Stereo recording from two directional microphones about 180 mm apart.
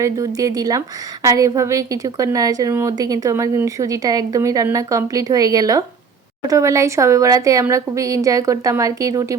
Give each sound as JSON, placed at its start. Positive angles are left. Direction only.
{"t": 0.0, "sound": "a woman's voice", "side_deg": -20}